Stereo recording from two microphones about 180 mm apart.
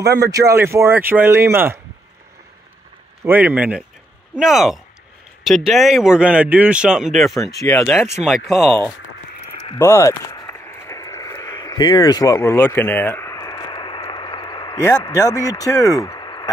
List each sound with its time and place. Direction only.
0.0 s speech: 20° right (ahead or behind)
3.3 s a man's voice: 10° right (ahead or behind)
7.5 s speech: 20° left (ahead or behind)
7.8 s a man's voice: 5° left (ahead or behind)
9.8 s a sound: 15° left (ahead or behind)